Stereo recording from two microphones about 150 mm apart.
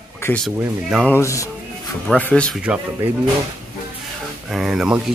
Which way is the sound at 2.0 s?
10° left (ahead or behind).